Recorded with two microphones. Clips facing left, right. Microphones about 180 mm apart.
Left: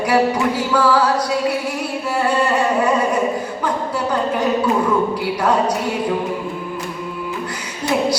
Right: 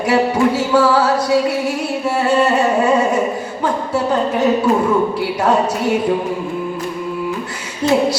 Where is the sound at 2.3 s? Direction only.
25° right (ahead or behind).